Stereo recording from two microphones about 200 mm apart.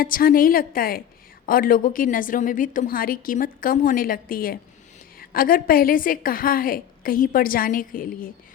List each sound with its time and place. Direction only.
0.0 s a woman's voice: 45° left (ahead or behind)